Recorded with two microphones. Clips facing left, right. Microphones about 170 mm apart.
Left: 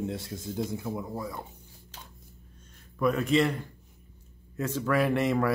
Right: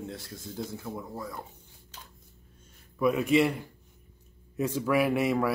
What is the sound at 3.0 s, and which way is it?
A man's voice, 10° right (ahead or behind).